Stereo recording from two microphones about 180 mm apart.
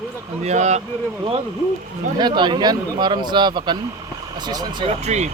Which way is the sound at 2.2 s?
25° right (ahead or behind).